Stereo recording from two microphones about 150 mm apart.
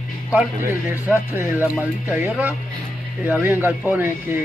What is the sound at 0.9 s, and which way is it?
Speech, 15° right (ahead or behind).